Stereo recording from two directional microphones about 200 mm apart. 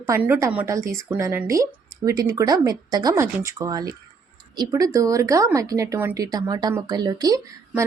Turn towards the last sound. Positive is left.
turn(degrees=-20)  # may be behind; listen again after turning